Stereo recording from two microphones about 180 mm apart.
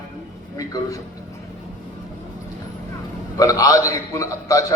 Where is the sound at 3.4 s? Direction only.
20° left (ahead or behind).